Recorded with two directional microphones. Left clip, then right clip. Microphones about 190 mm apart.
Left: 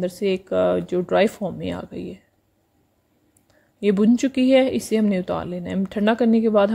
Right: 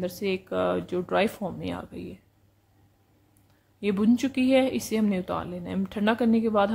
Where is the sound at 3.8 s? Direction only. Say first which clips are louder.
Left 6 dB; 25° left (ahead or behind).